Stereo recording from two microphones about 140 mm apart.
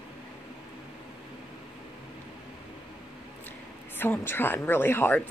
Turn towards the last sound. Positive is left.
turn(degrees=15)  # may be behind; listen again after turning